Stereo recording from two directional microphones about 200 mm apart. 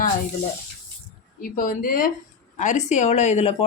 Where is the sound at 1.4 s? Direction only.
45° left (ahead or behind).